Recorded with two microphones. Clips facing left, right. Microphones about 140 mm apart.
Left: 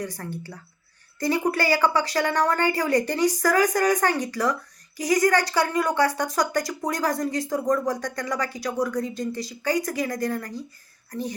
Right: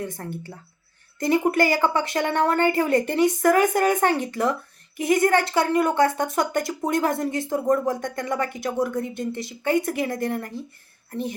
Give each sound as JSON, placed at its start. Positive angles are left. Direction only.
{"t": 0.0, "sound": "a woman's voice", "side_deg": -25}